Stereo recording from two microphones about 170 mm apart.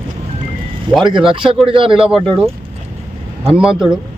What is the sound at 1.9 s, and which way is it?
Speech, 5° right (ahead or behind).